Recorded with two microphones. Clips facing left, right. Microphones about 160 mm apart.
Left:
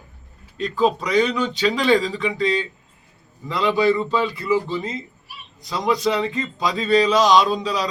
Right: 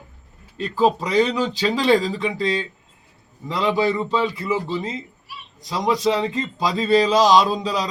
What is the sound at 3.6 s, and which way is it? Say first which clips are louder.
Speech: left 2 dB; 25° right (ahead or behind).